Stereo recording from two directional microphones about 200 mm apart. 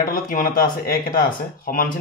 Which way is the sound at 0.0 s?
40° left (ahead or behind).